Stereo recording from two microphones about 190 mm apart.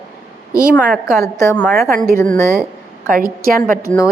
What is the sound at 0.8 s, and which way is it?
A woman's voice, 5° right (ahead or behind).